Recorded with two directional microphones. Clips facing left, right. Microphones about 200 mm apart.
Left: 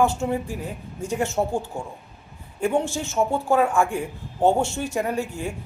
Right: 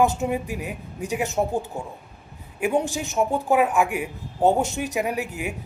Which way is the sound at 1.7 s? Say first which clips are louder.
Even; 5° right (ahead or behind).